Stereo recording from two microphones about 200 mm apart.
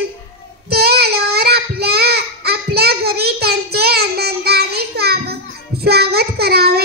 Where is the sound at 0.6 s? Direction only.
50° right (ahead or behind).